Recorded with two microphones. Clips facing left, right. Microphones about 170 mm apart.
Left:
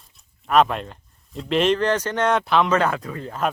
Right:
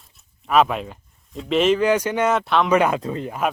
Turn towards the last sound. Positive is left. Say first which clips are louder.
# right 2 dB
turn(degrees=-15)  # may be behind; listen again after turning